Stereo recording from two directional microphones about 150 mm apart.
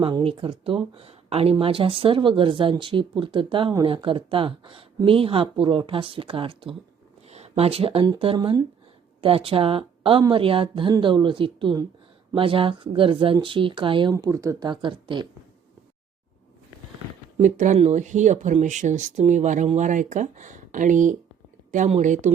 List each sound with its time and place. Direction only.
0.0 s speech: 35° right (ahead or behind)
17.4 s a woman's voice: 55° right (ahead or behind)